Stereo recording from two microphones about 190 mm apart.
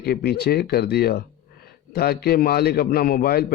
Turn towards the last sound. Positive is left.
turn(degrees=55)  # may be behind; listen again after turning